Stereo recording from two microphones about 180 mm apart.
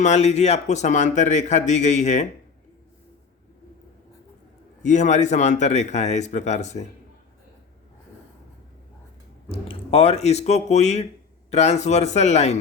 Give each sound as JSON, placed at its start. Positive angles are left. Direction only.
{"t": 0.0, "sound": "a man's voice", "side_deg": 40}
{"t": 4.8, "sound": "a man's voice", "side_deg": 40}
{"t": 9.5, "sound": "a man's voice", "side_deg": 30}